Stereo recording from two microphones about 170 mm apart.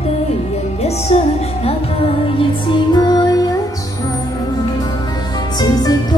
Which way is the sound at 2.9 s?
25° left (ahead or behind).